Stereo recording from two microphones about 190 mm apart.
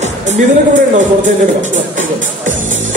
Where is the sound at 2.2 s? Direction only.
45° right (ahead or behind).